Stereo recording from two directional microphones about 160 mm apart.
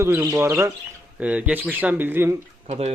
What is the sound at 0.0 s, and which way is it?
Speech, 15° right (ahead or behind).